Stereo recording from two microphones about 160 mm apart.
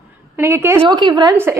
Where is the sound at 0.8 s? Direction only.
30° right (ahead or behind).